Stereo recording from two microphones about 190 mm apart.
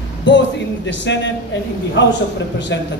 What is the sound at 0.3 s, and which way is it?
A man's voice, 70° left (ahead or behind).